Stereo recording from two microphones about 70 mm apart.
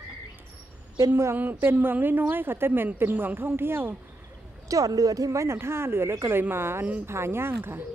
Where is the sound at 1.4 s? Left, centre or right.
Right.